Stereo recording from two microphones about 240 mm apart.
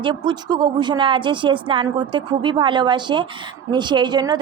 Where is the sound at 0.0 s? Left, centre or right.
Centre.